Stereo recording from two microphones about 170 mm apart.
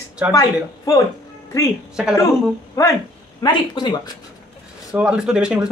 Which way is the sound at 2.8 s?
20° left (ahead or behind).